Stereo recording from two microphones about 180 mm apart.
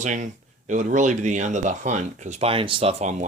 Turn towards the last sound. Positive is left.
turn(degrees=-35)  # may be behind; listen again after turning